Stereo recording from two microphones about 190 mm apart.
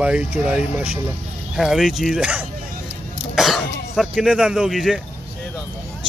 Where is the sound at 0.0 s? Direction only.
5° right (ahead or behind).